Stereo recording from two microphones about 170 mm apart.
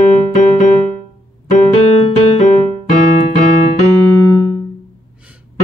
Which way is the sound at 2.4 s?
45° left (ahead or behind).